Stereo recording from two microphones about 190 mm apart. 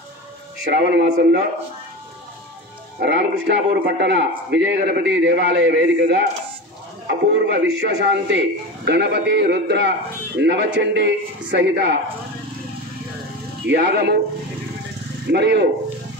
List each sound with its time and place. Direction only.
0.7 s a man's voice: 60° right (ahead or behind)
3.0 s a man's voice: 65° right (ahead or behind)
13.7 s a man's voice: 60° right (ahead or behind)
15.2 s a man's voice: 65° right (ahead or behind)